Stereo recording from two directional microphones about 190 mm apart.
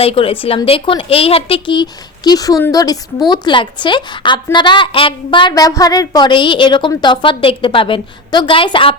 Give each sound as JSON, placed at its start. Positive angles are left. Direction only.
{"t": 0.0, "sound": "a woman's voice", "side_deg": 30}